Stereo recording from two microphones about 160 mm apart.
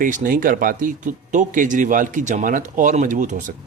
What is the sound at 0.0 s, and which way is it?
A man's voice, 60° right (ahead or behind).